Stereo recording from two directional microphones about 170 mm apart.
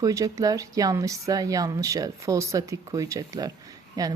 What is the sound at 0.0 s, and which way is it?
Speech, 20° right (ahead or behind).